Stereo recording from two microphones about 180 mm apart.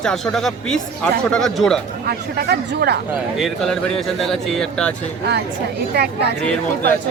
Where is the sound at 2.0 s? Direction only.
60° right (ahead or behind).